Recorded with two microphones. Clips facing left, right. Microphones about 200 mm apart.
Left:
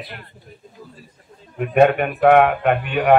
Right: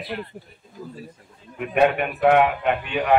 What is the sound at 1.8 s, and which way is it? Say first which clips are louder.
A man's voice: left 4 dB; 50° left (ahead or behind).